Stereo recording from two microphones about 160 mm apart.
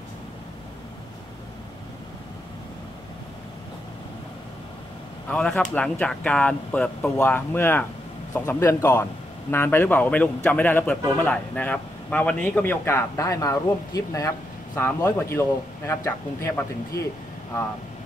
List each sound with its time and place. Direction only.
5.3 s a man's voice: 5° left (ahead or behind)